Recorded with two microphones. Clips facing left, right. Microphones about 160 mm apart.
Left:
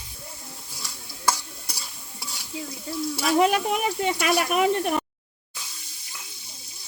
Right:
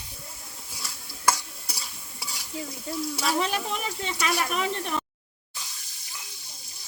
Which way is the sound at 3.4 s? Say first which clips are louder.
Left 7 dB; 55° left (ahead or behind).